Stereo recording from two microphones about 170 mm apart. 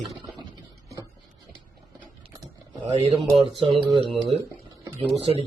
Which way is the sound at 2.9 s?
40° right (ahead or behind).